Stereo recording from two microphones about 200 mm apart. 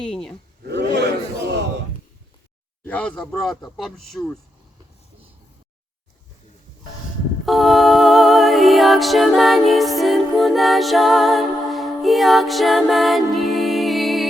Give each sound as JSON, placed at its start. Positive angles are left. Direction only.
{"t": 0.0, "sound": "speech", "side_deg": 5}
{"t": 0.7, "sound": "battle cry", "side_deg": -60}
{"t": 2.8, "sound": "speech", "side_deg": 5}
{"t": 7.4, "sound": "a capella", "side_deg": 0}